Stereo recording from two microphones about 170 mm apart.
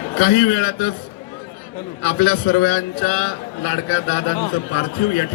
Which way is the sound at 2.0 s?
55° left (ahead or behind).